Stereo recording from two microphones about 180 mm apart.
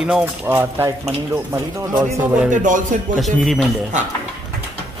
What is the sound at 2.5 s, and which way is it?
Speech, 45° right (ahead or behind).